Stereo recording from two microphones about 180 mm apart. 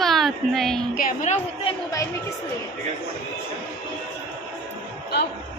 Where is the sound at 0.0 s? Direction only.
Centre (ahead or behind).